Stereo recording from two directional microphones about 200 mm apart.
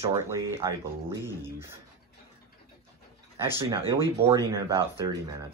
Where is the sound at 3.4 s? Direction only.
15° right (ahead or behind).